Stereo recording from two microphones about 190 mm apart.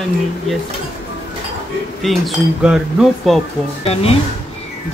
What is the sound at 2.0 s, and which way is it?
Speech, centre (ahead or behind).